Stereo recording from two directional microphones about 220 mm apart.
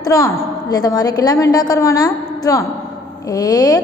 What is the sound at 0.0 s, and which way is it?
A woman's voice, 15° left (ahead or behind).